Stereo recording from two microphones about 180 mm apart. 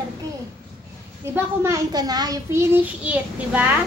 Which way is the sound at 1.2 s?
15° right (ahead or behind).